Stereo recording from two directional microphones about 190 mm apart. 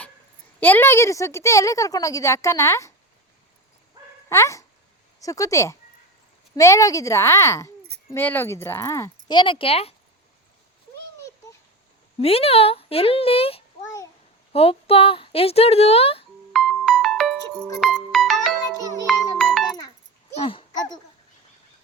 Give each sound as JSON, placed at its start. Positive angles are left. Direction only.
{"t": 0.6, "sound": "a woman's voice", "side_deg": 10}
{"t": 4.3, "sound": "a woman's voice", "side_deg": 15}
{"t": 12.2, "sound": "a woman's voice", "side_deg": 30}
{"t": 13.8, "sound": "babbling", "side_deg": 15}
{"t": 14.5, "sound": "a woman's voice", "side_deg": 30}
{"t": 16.5, "sound": "music", "side_deg": 0}
{"t": 20.3, "sound": "a sound", "side_deg": 30}